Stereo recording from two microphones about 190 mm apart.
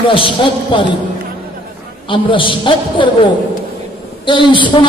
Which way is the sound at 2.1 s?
25° left (ahead or behind).